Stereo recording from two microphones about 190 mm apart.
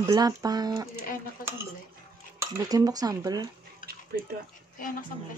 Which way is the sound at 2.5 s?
20° right (ahead or behind).